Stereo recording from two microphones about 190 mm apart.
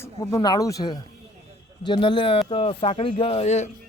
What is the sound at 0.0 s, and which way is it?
Speech, 20° left (ahead or behind).